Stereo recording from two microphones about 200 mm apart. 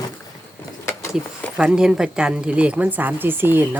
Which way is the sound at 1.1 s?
5° right (ahead or behind).